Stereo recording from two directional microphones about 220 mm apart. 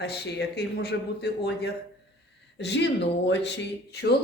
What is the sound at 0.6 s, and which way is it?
Speech, 50° left (ahead or behind).